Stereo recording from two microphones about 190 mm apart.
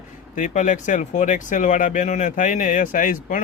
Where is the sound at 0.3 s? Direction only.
40° left (ahead or behind).